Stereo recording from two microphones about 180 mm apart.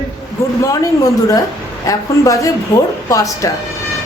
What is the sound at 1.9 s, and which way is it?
A man's voice, 20° left (ahead or behind).